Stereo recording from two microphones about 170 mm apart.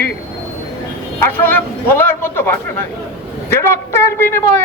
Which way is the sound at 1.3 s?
10° left (ahead or behind).